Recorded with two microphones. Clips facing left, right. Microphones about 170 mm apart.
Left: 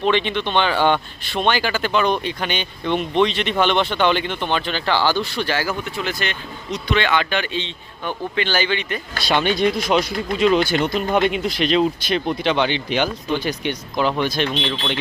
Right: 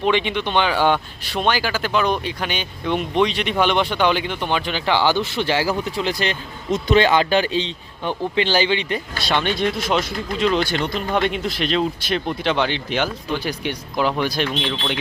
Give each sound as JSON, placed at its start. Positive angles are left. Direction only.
{"t": 0.0, "sound": "speech", "side_deg": -10}
{"t": 6.7, "sound": "speech", "side_deg": -45}
{"t": 9.2, "sound": "speech", "side_deg": 5}